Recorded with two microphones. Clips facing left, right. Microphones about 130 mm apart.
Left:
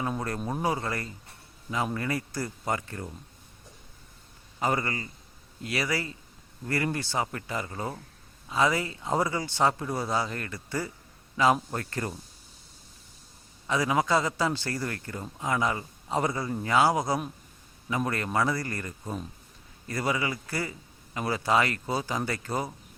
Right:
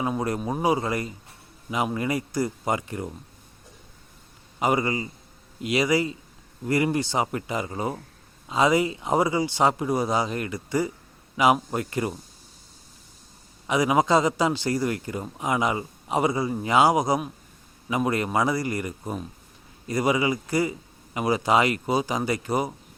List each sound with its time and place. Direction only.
0.0 s a man's voice: 15° right (ahead or behind)
4.6 s a man's voice: 15° right (ahead or behind)
13.7 s a man's voice: 15° right (ahead or behind)